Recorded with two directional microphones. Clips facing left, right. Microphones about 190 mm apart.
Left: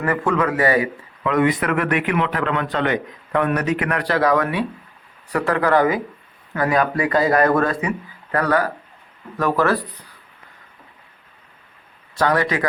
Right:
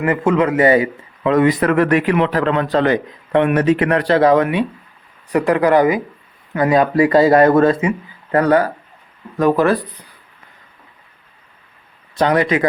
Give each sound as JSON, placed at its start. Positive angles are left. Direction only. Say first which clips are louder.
{"t": 0.0, "sound": "a man's voice", "louder": "right 4 dB", "side_deg": -20}
{"t": 12.1, "sound": "a man's voice", "louder": "right 4 dB", "side_deg": -20}